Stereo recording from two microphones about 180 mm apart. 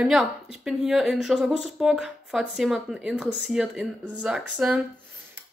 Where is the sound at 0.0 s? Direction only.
5° right (ahead or behind).